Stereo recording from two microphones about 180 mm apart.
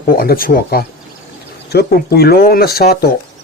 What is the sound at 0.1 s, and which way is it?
Speech, 55° left (ahead or behind).